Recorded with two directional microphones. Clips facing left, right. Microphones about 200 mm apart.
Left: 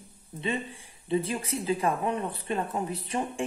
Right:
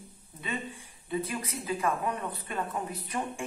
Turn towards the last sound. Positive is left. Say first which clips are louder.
# left 3 dB
turn(degrees=30)  # may be behind; listen again after turning